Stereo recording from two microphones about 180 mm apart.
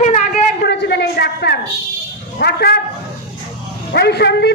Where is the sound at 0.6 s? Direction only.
70° left (ahead or behind).